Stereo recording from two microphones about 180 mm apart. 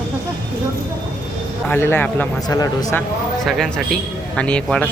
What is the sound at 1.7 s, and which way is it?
Speech, 15° left (ahead or behind).